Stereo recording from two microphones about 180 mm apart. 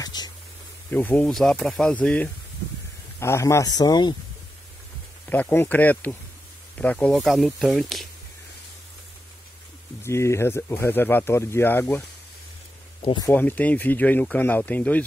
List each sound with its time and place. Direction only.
0.0 s a sound: 20° left (ahead or behind)
0.8 s speech: 10° left (ahead or behind)
5.2 s speech: 10° left (ahead or behind)
10.0 s speech: 15° left (ahead or behind)
13.0 s speech: 25° left (ahead or behind)
13.3 s speech: 10° left (ahead or behind)